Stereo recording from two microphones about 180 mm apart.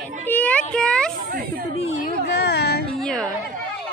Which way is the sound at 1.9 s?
65° left (ahead or behind).